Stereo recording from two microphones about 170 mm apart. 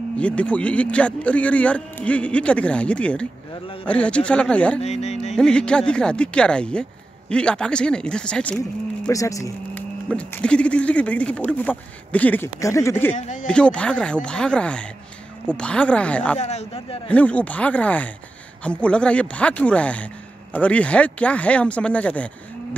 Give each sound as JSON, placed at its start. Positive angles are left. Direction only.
{"t": 0.2, "sound": "speech", "side_deg": 5}
{"t": 4.7, "sound": "speech", "side_deg": 40}
{"t": 5.3, "sound": "speech", "side_deg": 5}
{"t": 9.1, "sound": "speech", "side_deg": 20}
{"t": 10.0, "sound": "speech", "side_deg": 5}
{"t": 13.1, "sound": "speech", "side_deg": 45}
{"t": 13.5, "sound": "speech", "side_deg": 5}
{"t": 16.3, "sound": "speech", "side_deg": 40}
{"t": 17.1, "sound": "speech", "side_deg": 10}